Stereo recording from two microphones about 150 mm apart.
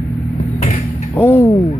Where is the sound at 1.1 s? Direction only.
15° left (ahead or behind).